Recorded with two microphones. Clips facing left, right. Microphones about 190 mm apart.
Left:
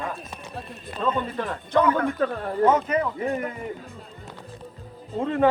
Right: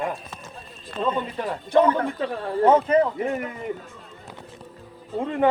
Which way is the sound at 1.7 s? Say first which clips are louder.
Right 2 dB; 25° right (ahead or behind).